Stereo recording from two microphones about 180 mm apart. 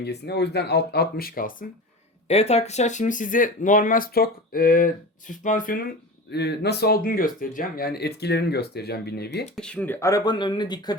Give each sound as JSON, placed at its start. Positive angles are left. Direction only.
{"t": 0.0, "sound": "speech", "side_deg": 65}
{"t": 2.2, "sound": "speech", "side_deg": 35}
{"t": 6.3, "sound": "speech", "side_deg": 65}
{"t": 9.6, "sound": "speech", "side_deg": 5}